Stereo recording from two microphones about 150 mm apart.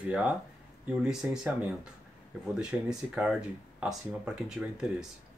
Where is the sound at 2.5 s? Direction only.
5° right (ahead or behind).